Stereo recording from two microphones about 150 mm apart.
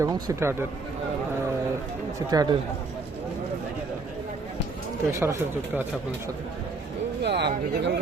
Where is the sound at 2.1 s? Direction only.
25° right (ahead or behind).